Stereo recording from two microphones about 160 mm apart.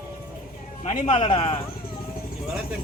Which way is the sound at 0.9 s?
40° left (ahead or behind).